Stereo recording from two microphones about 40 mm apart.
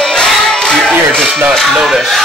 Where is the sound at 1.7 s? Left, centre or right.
Centre.